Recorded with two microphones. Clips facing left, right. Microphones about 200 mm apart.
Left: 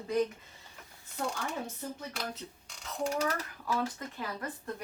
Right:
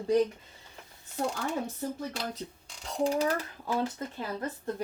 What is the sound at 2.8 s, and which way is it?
Speech, 30° right (ahead or behind).